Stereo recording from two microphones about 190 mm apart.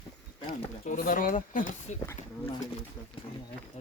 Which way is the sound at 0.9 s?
45° left (ahead or behind).